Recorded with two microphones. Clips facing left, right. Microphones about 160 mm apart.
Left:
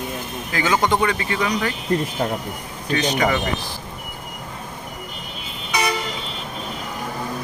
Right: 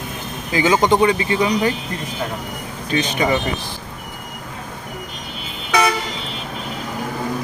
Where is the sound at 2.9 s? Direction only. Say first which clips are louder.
Right 1 dB; 20° right (ahead or behind).